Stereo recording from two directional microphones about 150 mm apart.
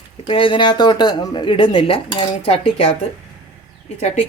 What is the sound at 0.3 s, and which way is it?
Speech, 35° left (ahead or behind).